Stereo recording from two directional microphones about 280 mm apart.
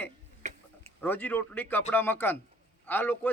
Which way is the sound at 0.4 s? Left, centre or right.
Right.